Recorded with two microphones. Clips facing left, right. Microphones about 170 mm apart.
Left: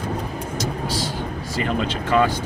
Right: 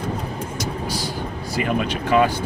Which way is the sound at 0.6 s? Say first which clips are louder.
Left 2 dB; 10° right (ahead or behind).